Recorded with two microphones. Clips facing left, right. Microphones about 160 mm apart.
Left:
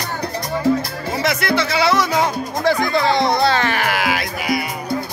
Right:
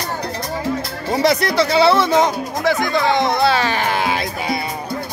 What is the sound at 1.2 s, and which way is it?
Speech, 35° right (ahead or behind).